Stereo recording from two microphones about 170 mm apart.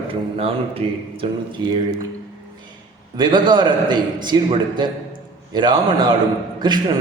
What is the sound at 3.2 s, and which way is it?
A man's voice, 25° right (ahead or behind).